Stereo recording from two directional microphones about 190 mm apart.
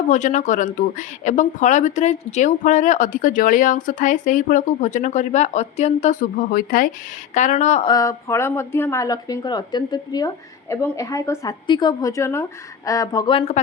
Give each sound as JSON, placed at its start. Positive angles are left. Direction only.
{"t": 0.1, "sound": "speech", "side_deg": 40}
{"t": 7.9, "sound": "speech", "side_deg": 20}